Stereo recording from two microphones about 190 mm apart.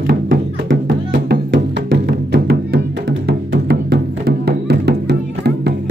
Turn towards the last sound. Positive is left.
turn(degrees=-60)  # may be behind; listen again after turning